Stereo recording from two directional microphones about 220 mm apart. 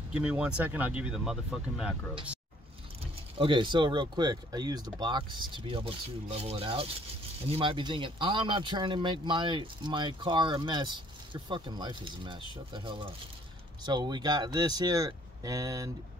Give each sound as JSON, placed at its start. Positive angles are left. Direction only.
{"t": 0.2, "sound": "speech", "side_deg": -5}
{"t": 3.3, "sound": "speech", "side_deg": -20}